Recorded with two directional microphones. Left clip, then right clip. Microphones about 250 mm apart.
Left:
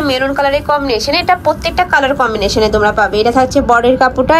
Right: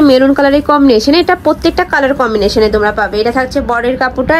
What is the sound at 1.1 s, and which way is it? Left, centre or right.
Speech, right.